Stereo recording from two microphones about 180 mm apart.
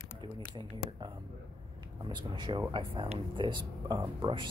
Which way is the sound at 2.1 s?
25° right (ahead or behind).